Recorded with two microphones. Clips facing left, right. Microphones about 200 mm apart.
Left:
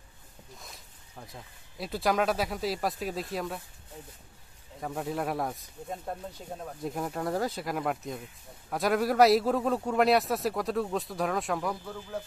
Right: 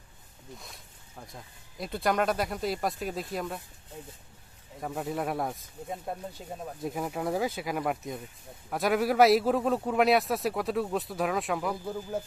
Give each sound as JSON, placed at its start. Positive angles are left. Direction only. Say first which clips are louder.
{"t": 0.6, "sound": "speech", "louder": "even", "side_deg": 0}
{"t": 4.7, "sound": "speech", "louder": "even", "side_deg": 0}
{"t": 11.8, "sound": "speech", "louder": "right 5 dB", "side_deg": -15}